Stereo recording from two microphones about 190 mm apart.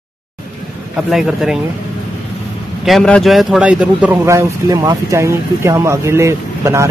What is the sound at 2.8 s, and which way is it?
Speech, centre (ahead or behind).